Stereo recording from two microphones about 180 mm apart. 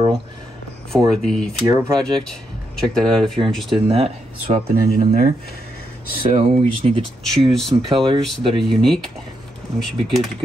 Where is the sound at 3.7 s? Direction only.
30° right (ahead or behind).